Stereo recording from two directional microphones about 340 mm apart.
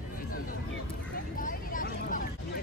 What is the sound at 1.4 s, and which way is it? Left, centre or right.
Vehicle, left.